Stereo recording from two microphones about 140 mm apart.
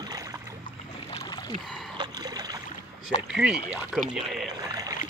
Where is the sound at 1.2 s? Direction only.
30° left (ahead or behind).